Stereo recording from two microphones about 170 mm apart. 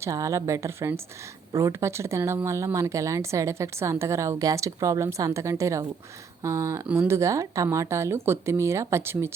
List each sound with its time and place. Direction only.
0.0 s speech: 20° right (ahead or behind)